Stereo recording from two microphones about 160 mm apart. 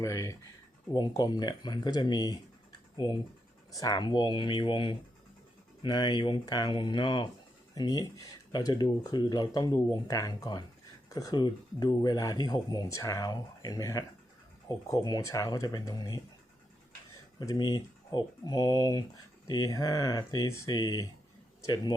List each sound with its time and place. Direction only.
0.0 s speech: 20° left (ahead or behind)
3.8 s speech: 25° left (ahead or behind)
17.4 s speech: 25° left (ahead or behind)